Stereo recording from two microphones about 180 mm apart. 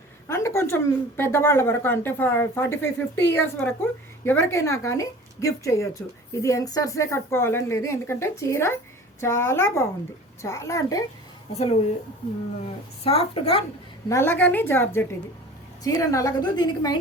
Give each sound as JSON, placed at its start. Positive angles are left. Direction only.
{"t": 0.3, "sound": "a woman's voice", "side_deg": 15}
{"t": 11.5, "sound": "a woman's voice", "side_deg": 35}
{"t": 13.1, "sound": "a woman's voice", "side_deg": 35}
{"t": 14.1, "sound": "a woman's voice", "side_deg": 15}